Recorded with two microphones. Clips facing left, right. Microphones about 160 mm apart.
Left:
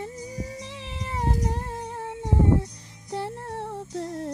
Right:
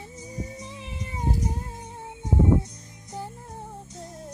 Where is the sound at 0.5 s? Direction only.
85° left.